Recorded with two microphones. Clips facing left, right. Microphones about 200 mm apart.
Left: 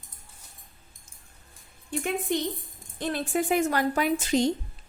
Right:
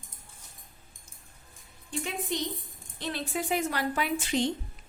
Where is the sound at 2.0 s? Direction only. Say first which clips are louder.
Left 5 dB; 55° left (ahead or behind).